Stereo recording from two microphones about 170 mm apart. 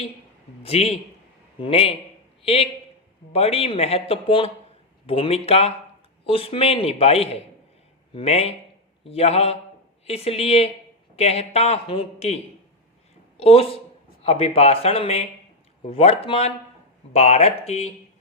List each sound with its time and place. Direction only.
0.6 s a man's voice: 35° left (ahead or behind)
13.4 s speech: 35° left (ahead or behind)